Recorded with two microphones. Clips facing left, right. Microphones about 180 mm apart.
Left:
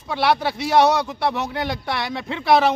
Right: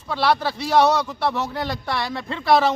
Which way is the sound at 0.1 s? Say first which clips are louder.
Left 1 dB; 20° left (ahead or behind).